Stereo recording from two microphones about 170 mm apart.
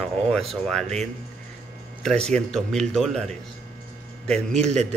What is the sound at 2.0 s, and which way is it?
A man's voice, 5° left (ahead or behind).